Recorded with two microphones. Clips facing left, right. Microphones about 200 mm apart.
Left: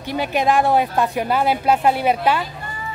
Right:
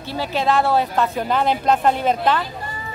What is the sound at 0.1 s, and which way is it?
A woman's voice, 15° left (ahead or behind).